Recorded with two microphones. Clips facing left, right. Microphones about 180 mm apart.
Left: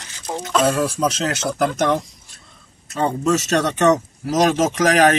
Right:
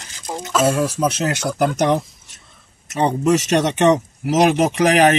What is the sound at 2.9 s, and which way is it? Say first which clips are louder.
Speech: right 2 dB; 15° right (ahead or behind).